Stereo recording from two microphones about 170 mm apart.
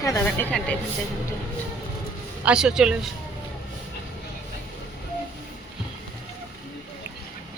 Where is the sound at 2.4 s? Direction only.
5° right (ahead or behind).